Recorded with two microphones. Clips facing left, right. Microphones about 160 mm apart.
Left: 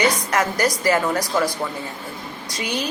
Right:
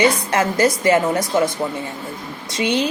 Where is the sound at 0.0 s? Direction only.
30° right (ahead or behind).